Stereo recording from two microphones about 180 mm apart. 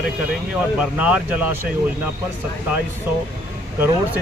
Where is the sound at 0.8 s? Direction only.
5° right (ahead or behind).